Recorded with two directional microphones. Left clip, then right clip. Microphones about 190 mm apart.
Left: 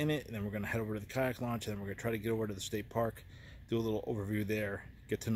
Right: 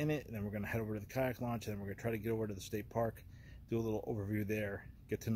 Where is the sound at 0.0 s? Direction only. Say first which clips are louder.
Left 3 dB; 5° left (ahead or behind).